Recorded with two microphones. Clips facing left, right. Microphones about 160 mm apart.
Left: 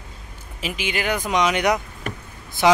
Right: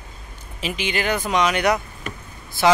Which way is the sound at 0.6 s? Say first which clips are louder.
Right 1 dB; 5° left (ahead or behind).